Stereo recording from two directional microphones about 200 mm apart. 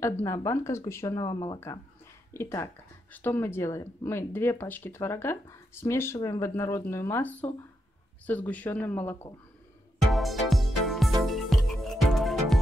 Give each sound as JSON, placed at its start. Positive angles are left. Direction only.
{"t": 0.2, "sound": "speech", "side_deg": 15}
{"t": 10.1, "sound": "music", "side_deg": 0}